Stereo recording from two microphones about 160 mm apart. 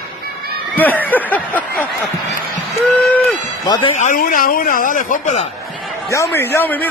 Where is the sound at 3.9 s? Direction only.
55° left (ahead or behind).